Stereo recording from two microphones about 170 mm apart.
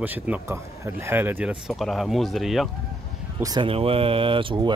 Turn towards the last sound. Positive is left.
turn(degrees=-30)  # may be behind; listen again after turning